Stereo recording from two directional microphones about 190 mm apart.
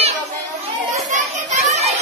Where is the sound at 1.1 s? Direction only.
35° right (ahead or behind).